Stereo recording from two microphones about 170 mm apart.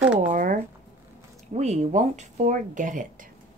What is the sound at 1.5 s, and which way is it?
Speech, 40° right (ahead or behind).